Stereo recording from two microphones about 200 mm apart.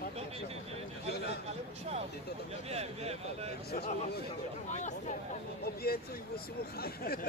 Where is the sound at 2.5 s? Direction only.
30° right (ahead or behind).